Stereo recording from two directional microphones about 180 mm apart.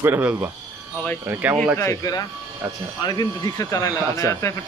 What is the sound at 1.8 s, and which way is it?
Speech, 20° left (ahead or behind).